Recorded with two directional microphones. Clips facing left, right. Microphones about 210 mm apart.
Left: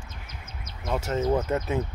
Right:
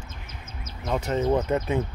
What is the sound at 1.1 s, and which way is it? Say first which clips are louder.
Speech: right 2 dB; centre (ahead or behind).